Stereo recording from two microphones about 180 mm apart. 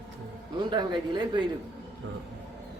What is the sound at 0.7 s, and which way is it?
Speech, 25° right (ahead or behind).